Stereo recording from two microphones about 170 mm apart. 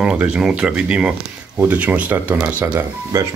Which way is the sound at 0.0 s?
5° right (ahead or behind).